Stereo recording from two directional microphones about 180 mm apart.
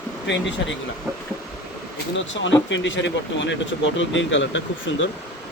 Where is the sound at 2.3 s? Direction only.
90° left.